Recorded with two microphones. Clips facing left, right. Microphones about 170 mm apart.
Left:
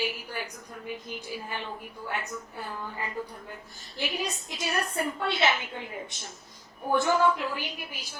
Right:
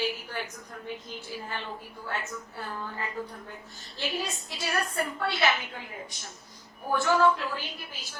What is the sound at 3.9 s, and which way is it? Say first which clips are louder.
A woman's voice: left 1 dB; 20° left (ahead or behind).